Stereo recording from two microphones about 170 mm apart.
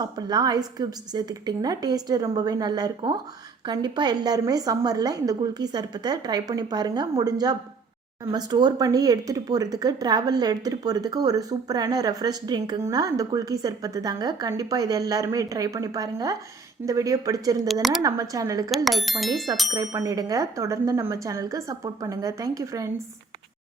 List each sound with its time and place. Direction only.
0.2 s speech: 25° right (ahead or behind)
18.9 s speech: centre (ahead or behind)
19.7 s speech: 20° right (ahead or behind)